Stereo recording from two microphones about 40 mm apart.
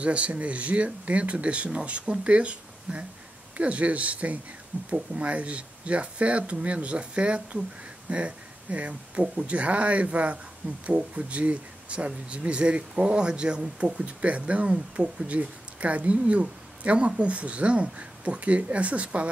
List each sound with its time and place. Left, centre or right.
0.0 s speech: right